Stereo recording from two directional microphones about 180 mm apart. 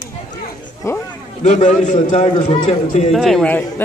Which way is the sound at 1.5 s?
40° left (ahead or behind).